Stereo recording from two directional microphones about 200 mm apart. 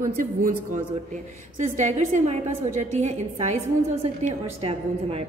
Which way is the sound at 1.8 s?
35° right (ahead or behind).